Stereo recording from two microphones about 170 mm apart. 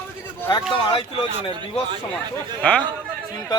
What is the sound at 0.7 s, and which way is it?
Speech, 30° left (ahead or behind).